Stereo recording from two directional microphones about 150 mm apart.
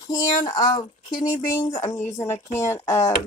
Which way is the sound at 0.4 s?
25° left (ahead or behind).